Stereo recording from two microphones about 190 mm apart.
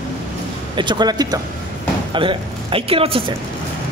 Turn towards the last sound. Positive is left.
turn(degrees=-30)  # may be behind; listen again after turning